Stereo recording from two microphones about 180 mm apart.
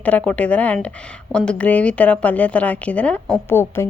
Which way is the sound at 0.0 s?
10° left (ahead or behind).